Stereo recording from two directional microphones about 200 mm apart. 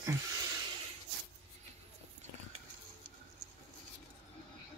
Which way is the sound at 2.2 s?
35° right (ahead or behind).